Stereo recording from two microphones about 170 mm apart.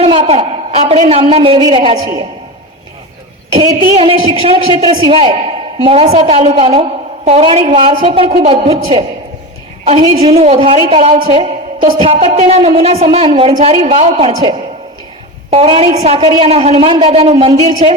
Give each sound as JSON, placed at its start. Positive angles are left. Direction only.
{"t": 0.0, "sound": "a sound", "side_deg": -35}
{"t": 0.9, "sound": "a man's voice", "side_deg": -35}
{"t": 3.5, "sound": "a man's voice", "side_deg": -25}